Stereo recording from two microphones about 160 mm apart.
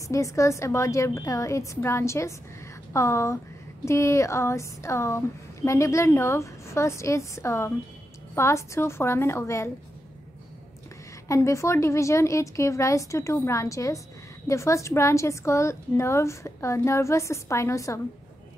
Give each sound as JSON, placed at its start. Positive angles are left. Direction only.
{"t": 0.1, "sound": "a woman's voice", "side_deg": 20}
{"t": 11.2, "sound": "a woman's voice", "side_deg": 20}